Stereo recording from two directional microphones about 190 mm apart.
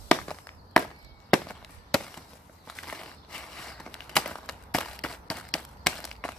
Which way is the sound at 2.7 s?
5° left (ahead or behind).